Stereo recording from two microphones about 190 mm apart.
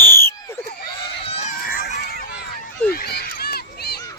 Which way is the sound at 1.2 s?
35° left (ahead or behind).